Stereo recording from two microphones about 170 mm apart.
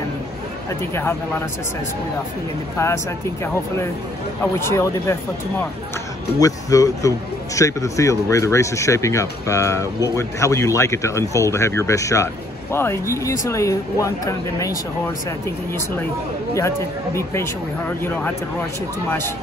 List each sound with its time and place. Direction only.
4.6 s a man's voice: 15° left (ahead or behind)
6.4 s a man's voice: 20° left (ahead or behind)
16.5 s a man's voice: 15° left (ahead or behind)
19.0 s a man's voice: 15° left (ahead or behind)